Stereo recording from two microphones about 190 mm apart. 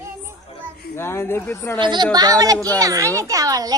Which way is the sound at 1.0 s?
10° left (ahead or behind).